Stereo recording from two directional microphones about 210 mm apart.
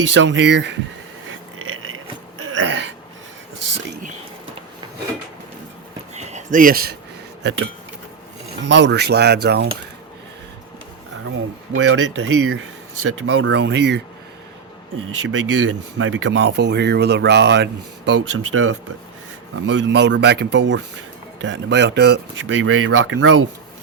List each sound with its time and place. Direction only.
0.1 s speech: 60° right (ahead or behind)
1.3 s a sound: 75° right (ahead or behind)
6.1 s a sound: 35° right (ahead or behind)
8.6 s speech: 55° right (ahead or behind)
11.7 s speech: 65° right (ahead or behind)
15.2 s speech: 70° right (ahead or behind)